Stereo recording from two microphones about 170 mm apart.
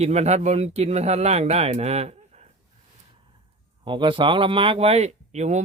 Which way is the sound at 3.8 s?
30° right (ahead or behind).